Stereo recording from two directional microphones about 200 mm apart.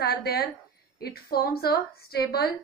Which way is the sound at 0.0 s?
50° left (ahead or behind).